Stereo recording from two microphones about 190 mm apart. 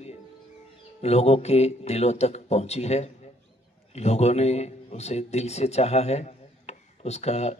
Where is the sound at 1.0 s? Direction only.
35° left (ahead or behind).